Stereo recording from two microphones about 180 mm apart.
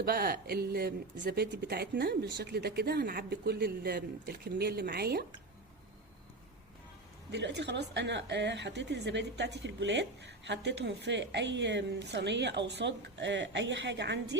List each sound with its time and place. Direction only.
0.0 s speech: 60° right (ahead or behind)
7.3 s a woman's voice: 75° right (ahead or behind)